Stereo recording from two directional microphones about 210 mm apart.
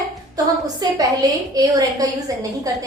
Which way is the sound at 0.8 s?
20° right (ahead or behind).